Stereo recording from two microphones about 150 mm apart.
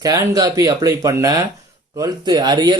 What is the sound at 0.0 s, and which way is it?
Speech, 25° right (ahead or behind).